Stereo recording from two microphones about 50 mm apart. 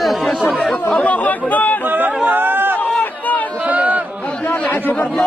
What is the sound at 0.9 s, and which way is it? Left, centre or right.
Chatter, left.